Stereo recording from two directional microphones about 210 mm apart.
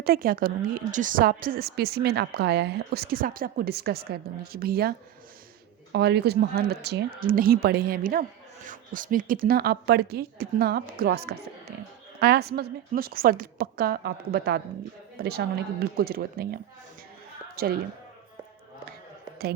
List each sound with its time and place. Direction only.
0.0 s a woman's voice: 45° right (ahead or behind)
17.6 s a woman's voice: 45° right (ahead or behind)